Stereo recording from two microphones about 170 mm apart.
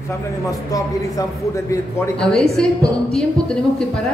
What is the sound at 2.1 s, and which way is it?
Speech, centre (ahead or behind).